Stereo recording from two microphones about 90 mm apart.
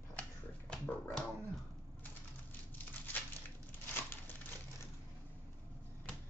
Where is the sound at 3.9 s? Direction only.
25° left (ahead or behind).